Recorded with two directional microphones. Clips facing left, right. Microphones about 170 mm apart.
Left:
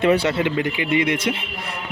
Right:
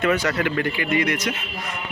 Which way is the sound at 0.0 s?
30° left (ahead or behind).